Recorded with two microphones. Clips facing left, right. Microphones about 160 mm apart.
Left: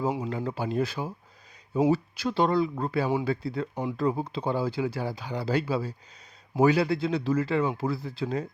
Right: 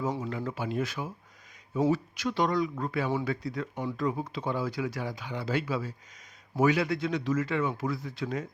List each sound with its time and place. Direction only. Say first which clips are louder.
0.3 s speech: left 3 dB; 35° left (ahead or behind)